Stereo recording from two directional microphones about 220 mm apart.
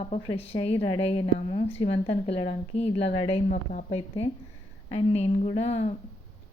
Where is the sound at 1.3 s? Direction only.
35° left (ahead or behind).